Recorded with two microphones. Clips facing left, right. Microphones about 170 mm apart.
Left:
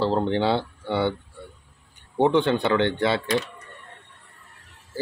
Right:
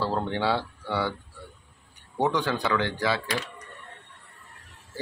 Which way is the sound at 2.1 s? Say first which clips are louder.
Left 6 dB; 25° left (ahead or behind).